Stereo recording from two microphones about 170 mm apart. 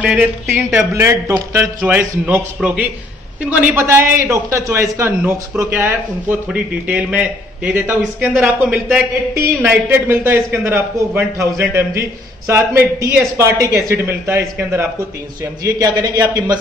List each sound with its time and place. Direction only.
0.0 s a man's voice: 5° right (ahead or behind); by 16.5 s 25° right (ahead or behind)